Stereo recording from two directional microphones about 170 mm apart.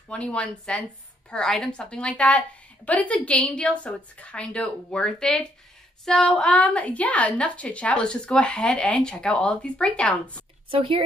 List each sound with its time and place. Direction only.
0.1 s a woman's voice: 5° left (ahead or behind)
10.7 s speech: 30° right (ahead or behind)